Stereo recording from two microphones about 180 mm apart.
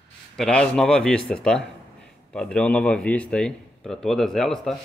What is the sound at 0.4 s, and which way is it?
Speech, 5° left (ahead or behind).